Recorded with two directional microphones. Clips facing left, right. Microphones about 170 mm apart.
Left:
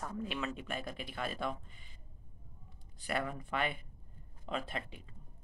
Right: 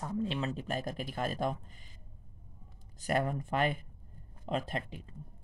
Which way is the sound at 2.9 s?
40° right (ahead or behind).